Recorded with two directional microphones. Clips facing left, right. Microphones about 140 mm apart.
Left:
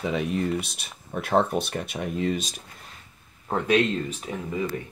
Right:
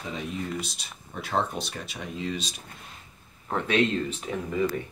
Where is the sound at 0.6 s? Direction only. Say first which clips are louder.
Right 1 dB; 60° left (ahead or behind).